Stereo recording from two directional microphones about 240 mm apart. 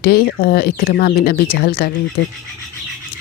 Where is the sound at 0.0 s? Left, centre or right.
Left.